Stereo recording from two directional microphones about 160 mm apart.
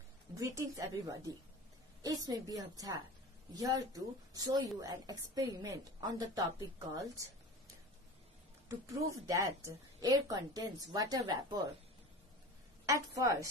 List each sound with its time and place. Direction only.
0.4 s a woman's voice: 20° right (ahead or behind)
7.0 s a sound: 20° right (ahead or behind)
8.6 s a woman's voice: 20° right (ahead or behind)
12.8 s a woman's voice: 20° right (ahead or behind)